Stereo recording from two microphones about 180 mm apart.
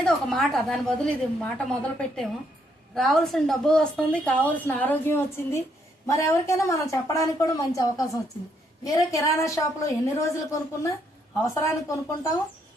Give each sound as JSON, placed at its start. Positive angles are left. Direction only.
{"t": 0.0, "sound": "a woman's voice", "side_deg": 0}